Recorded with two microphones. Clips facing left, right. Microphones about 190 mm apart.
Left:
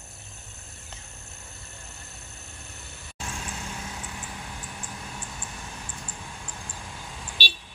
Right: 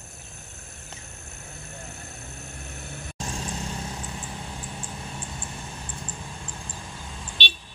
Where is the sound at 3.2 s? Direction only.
35° right (ahead or behind).